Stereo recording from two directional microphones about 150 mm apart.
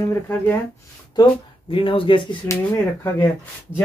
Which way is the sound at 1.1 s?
30° left (ahead or behind).